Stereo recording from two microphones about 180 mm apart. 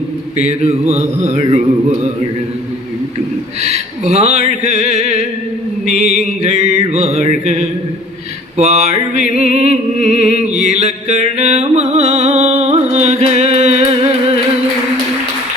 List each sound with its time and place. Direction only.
0.4 s mantra: 35° right (ahead or behind)
3.6 s speech: 40° right (ahead or behind)
4.6 s mantra: 40° right (ahead or behind)
8.5 s music: 40° right (ahead or behind)